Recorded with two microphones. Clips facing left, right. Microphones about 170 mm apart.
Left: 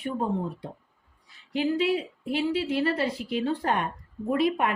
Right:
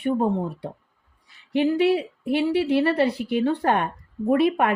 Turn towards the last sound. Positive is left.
turn(degrees=-60)  # may be behind; listen again after turning